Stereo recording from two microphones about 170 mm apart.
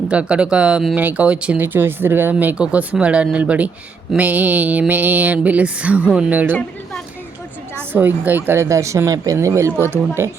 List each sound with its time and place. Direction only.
0.1 s speech: 5° right (ahead or behind)
7.9 s speech: 10° right (ahead or behind)